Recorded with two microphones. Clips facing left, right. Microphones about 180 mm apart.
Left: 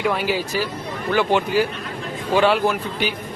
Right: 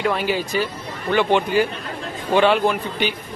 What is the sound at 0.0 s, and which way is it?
A man's voice, 5° left (ahead or behind).